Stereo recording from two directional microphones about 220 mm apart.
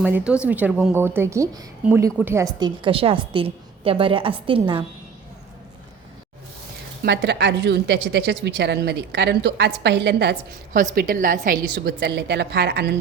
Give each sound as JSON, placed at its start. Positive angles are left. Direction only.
{"t": 0.0, "sound": "a woman's voice", "side_deg": -5}
{"t": 7.0, "sound": "a woman's voice", "side_deg": -50}
{"t": 10.8, "sound": "a woman's voice", "side_deg": -40}